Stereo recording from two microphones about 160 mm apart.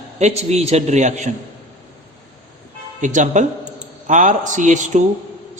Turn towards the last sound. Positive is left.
turn(degrees=-50)  # may be behind; listen again after turning